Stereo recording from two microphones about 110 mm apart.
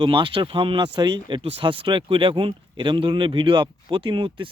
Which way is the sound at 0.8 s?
40° right (ahead or behind).